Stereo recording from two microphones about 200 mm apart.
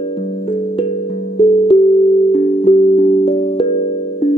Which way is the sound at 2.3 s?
35° left (ahead or behind).